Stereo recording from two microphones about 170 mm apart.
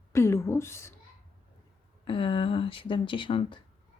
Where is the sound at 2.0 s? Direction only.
30° left (ahead or behind).